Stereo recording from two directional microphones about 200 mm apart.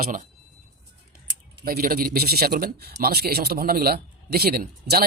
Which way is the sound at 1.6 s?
45° right (ahead or behind).